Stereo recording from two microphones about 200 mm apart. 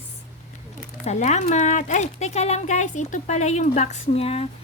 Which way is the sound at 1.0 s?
35° left (ahead or behind).